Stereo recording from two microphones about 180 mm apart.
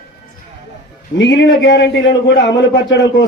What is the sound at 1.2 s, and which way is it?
A man's voice, 90° left.